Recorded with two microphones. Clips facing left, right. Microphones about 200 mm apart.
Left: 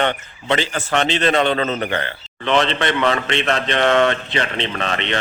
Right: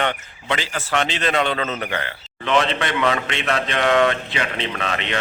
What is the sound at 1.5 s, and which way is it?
Speech, 30° left (ahead or behind).